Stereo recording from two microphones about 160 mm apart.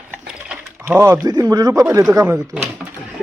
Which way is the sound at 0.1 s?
5° right (ahead or behind).